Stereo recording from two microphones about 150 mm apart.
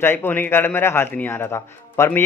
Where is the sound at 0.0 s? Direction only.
15° left (ahead or behind).